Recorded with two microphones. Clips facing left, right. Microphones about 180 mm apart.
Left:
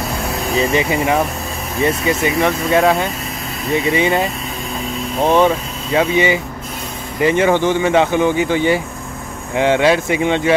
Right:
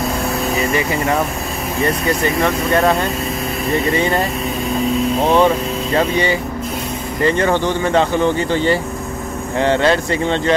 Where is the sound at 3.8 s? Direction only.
10° left (ahead or behind).